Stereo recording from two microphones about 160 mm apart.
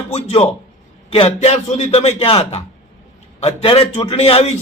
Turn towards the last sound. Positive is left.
turn(degrees=40)  # may be behind; listen again after turning